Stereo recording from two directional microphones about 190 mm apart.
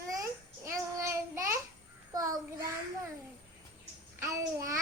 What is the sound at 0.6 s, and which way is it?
Child singing, 15° right (ahead or behind).